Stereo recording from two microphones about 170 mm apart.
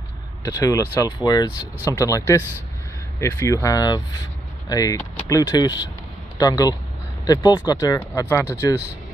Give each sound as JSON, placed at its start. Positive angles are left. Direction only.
{"t": 0.6, "sound": "speech", "side_deg": 20}